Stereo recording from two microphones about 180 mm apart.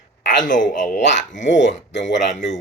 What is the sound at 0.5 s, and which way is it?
Speech, 45° left (ahead or behind).